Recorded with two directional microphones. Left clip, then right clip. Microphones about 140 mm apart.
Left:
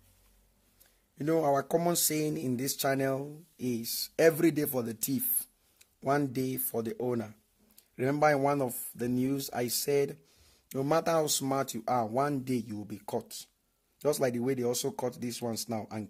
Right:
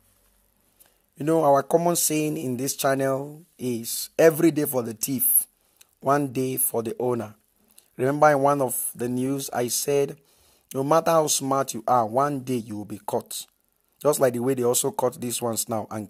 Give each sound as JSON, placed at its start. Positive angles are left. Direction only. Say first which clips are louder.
{"t": 1.1, "sound": "speech", "louder": "right 8 dB", "side_deg": -30}
{"t": 10.3, "sound": "a sound", "louder": "right 7 dB", "side_deg": -20}
{"t": 10.9, "sound": "speech", "louder": "right 8 dB", "side_deg": -30}